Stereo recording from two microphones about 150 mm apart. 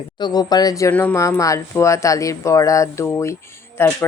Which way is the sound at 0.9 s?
15° left (ahead or behind).